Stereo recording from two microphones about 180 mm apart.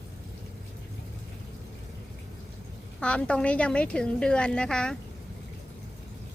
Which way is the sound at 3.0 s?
5° left (ahead or behind).